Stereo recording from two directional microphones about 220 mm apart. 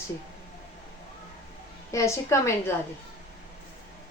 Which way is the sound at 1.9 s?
15° left (ahead or behind).